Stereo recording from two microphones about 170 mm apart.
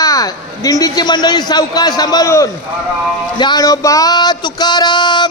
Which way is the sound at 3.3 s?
25° left (ahead or behind).